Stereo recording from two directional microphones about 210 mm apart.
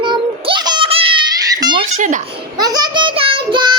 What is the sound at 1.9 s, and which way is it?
Speech, 35° right (ahead or behind).